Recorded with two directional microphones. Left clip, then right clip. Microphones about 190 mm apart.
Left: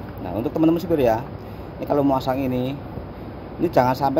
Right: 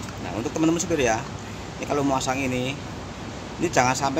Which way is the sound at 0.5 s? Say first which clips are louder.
Left 4 dB; 30° left (ahead or behind).